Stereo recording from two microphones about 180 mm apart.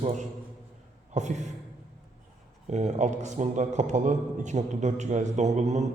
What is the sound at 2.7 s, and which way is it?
A man's voice, 40° right (ahead or behind).